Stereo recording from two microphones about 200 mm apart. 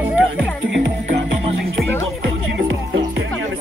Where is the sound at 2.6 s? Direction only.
70° right (ahead or behind).